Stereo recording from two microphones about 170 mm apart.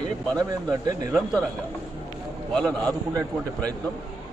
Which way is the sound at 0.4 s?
20° right (ahead or behind).